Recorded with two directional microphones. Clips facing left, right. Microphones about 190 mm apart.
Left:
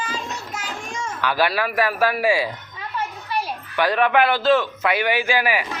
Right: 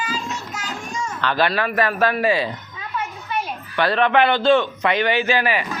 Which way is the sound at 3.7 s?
10° left (ahead or behind).